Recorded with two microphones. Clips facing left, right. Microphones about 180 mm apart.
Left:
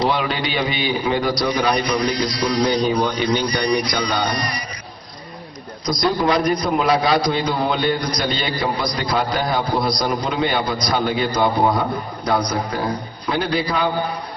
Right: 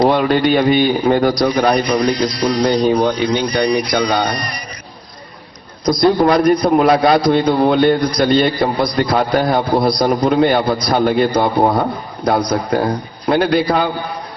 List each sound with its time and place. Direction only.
0.0 s a man's voice: 50° right (ahead or behind)
5.8 s a man's voice: 55° right (ahead or behind)